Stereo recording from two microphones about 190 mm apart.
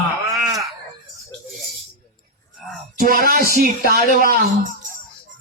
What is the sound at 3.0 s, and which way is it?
Speech, 50° right (ahead or behind).